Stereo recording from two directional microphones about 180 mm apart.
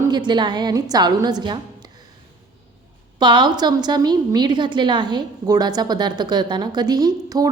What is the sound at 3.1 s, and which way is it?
A woman's voice, 25° right (ahead or behind).